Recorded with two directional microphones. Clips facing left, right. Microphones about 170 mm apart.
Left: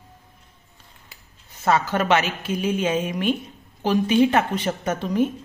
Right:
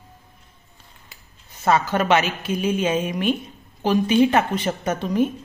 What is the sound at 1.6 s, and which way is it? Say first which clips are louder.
A woman's voice: right 1 dB; 20° right (ahead or behind).